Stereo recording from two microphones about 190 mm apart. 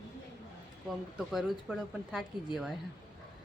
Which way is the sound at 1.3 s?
Centre (ahead or behind).